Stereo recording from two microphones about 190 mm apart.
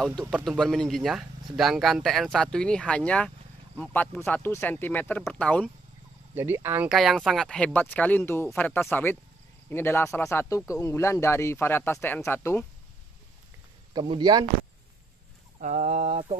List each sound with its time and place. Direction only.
0.5 s speech: 5° left (ahead or behind)
6.3 s speech: 10° right (ahead or behind)
6.9 s speech: centre (ahead or behind)
13.9 s speech: 25° right (ahead or behind)
15.6 s speech: 40° right (ahead or behind)